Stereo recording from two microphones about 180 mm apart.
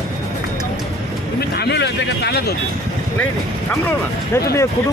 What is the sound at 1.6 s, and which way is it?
Speech, 65° left (ahead or behind).